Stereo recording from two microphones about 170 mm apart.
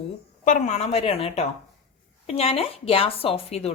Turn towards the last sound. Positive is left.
turn(degrees=35)  # may be behind; listen again after turning